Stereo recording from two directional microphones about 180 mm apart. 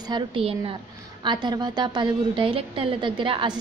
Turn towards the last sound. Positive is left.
turn(degrees=-30)  # may be behind; listen again after turning